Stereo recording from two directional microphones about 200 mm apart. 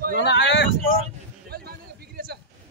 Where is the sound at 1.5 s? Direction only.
50° right (ahead or behind).